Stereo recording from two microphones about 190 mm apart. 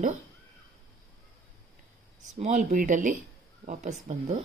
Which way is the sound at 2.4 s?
35° right (ahead or behind).